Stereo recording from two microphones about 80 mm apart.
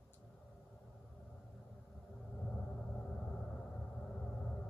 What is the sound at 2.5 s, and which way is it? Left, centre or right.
Rumble, centre.